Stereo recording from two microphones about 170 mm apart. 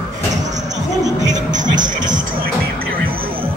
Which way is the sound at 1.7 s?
25° right (ahead or behind).